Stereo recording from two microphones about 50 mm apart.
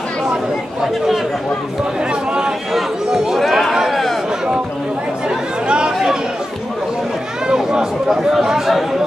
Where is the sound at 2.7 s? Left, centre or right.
Centre.